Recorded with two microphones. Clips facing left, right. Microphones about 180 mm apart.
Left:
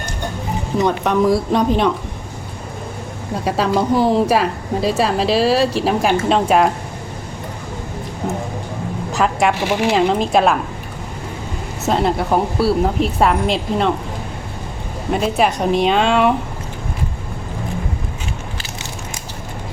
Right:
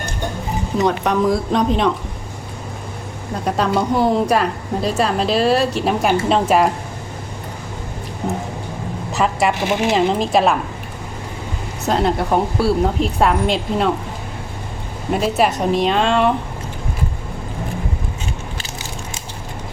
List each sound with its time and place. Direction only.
0.8 s a woman's voice: centre (ahead or behind)
3.4 s a woman's voice: 5° left (ahead or behind)
9.1 s a woman's voice: centre (ahead or behind)
9.6 s speech: 15° right (ahead or behind)
9.9 s a woman's voice: centre (ahead or behind)
11.9 s a woman's voice: centre (ahead or behind)
15.1 s a woman's voice: centre (ahead or behind)